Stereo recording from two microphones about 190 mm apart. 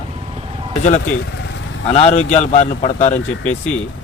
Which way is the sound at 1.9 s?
35° left (ahead or behind).